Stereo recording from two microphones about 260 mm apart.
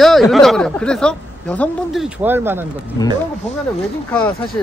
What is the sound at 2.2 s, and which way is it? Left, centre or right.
Speech, centre.